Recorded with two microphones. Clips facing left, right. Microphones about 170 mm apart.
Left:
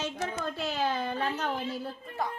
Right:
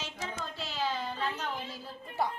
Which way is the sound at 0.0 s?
55° left (ahead or behind).